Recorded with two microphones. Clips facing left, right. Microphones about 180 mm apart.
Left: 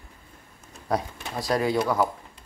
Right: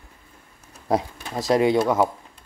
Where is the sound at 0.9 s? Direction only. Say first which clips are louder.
Right 4 dB; 25° right (ahead or behind).